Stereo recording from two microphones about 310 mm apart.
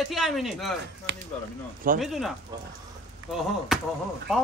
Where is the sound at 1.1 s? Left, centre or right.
Right.